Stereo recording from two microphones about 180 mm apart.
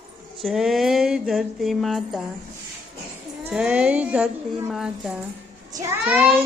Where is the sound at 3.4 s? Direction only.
5° right (ahead or behind).